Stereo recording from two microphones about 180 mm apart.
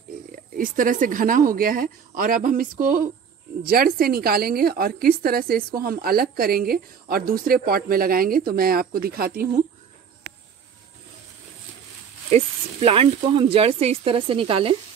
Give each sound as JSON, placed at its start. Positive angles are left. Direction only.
{"t": 0.3, "sound": "a woman's voice", "side_deg": -50}
{"t": 12.3, "sound": "speech", "side_deg": -35}